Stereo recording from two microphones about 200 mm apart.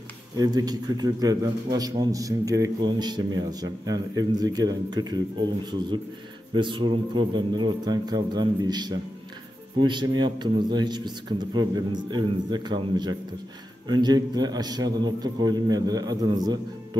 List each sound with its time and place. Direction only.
0.4 s a man's voice: 20° right (ahead or behind)
6.5 s a man's voice: 25° right (ahead or behind)